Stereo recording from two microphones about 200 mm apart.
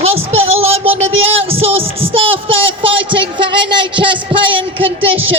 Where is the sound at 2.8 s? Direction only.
25° right (ahead or behind).